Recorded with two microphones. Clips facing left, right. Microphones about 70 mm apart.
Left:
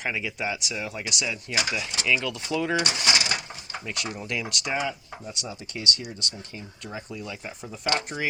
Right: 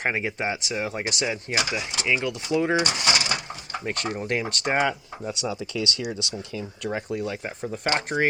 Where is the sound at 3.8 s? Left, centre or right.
Right.